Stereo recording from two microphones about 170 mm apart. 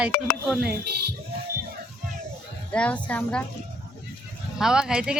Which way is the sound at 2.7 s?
5° left (ahead or behind).